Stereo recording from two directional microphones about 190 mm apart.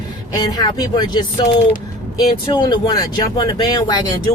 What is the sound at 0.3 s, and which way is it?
Speech, 20° left (ahead or behind).